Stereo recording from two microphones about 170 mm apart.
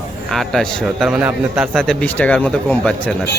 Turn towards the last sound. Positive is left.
turn(degrees=5)  # may be behind; listen again after turning